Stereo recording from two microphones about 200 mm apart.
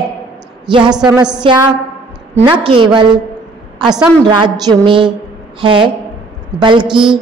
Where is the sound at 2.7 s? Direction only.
25° right (ahead or behind).